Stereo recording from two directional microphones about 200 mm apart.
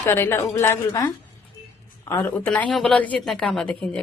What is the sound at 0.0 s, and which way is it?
A woman's voice, 10° left (ahead or behind).